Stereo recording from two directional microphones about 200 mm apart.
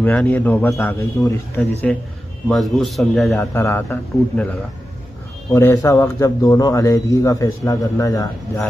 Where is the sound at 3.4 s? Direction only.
10° left (ahead or behind).